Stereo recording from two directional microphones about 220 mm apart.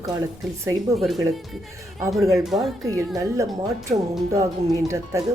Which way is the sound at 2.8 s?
15° right (ahead or behind).